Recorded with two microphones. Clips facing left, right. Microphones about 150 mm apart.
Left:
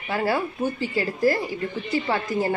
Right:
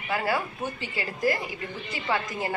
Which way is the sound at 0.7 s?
35° left (ahead or behind).